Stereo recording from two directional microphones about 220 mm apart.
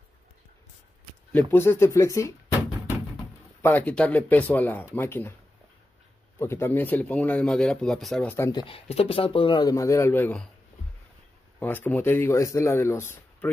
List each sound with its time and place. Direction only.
1.5 s speech: 10° left (ahead or behind)
3.6 s speech: 5° left (ahead or behind)
6.4 s speech: 10° left (ahead or behind)
8.5 s speech: 20° left (ahead or behind); by 10.5 s 5° left (ahead or behind)
11.6 s speech: 10° left (ahead or behind)